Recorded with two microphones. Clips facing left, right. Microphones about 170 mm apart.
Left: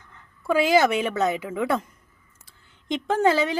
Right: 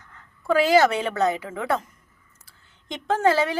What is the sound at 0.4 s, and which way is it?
A woman's voice, 15° left (ahead or behind).